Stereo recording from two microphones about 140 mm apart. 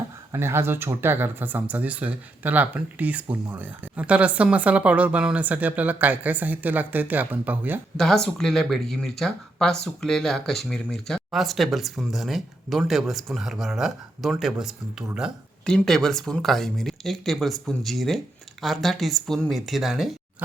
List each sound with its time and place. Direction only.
0.3 s speech: 15° right (ahead or behind)
7.9 s speech: 5° left (ahead or behind)